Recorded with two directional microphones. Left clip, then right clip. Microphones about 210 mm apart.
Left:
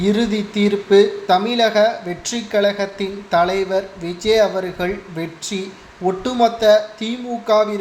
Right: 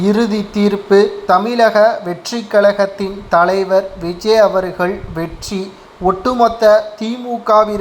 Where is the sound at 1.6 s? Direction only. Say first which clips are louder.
Right 5 dB; 15° right (ahead or behind).